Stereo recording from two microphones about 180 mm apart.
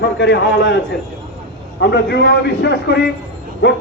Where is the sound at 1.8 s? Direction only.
70° left (ahead or behind).